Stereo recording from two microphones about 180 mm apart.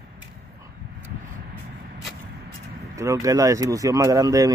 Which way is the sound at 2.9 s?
15° right (ahead or behind).